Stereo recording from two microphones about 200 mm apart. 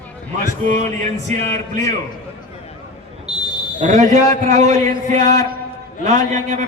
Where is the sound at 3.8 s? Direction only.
35° right (ahead or behind).